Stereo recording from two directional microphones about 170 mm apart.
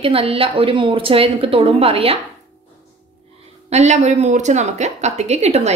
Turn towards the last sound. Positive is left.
turn(degrees=-40)  # may be behind; listen again after turning